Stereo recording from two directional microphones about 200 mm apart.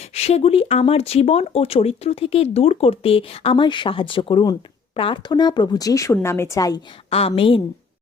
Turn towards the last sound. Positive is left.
turn(degrees=30)  # may be behind; listen again after turning